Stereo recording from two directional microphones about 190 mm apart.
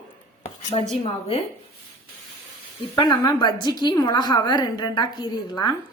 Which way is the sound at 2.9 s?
20° left (ahead or behind).